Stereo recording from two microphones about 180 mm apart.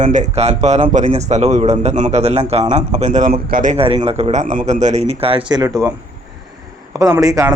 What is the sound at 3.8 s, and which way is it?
Speech, 30° right (ahead or behind).